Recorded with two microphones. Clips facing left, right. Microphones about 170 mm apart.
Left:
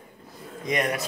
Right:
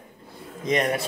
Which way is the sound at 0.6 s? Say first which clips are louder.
Right 3 dB; 25° right (ahead or behind).